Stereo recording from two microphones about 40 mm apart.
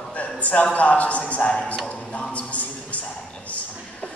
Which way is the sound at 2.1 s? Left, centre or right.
Left.